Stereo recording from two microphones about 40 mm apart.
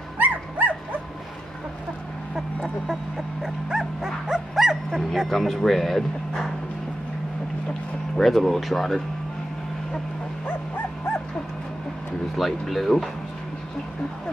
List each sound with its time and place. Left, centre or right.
0.2 s dog: right
2.6 s a sound: centre
3.7 s dog: centre
5.3 s speech: centre
8.2 s speech: centre
12.4 s speech: centre